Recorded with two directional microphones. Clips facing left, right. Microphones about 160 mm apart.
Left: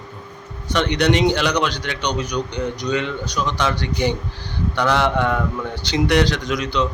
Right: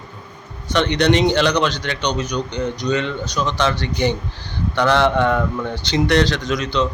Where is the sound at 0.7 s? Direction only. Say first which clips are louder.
Right 2 dB; 10° left (ahead or behind).